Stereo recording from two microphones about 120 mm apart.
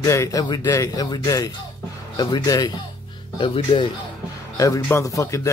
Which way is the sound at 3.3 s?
45° left (ahead or behind).